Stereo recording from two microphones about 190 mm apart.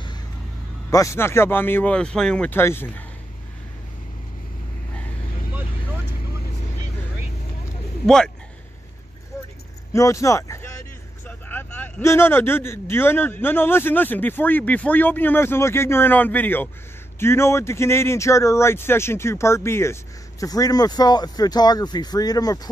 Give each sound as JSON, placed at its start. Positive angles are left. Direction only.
{"t": 0.8, "sound": "speech", "side_deg": 15}
{"t": 9.9, "sound": "speech", "side_deg": 15}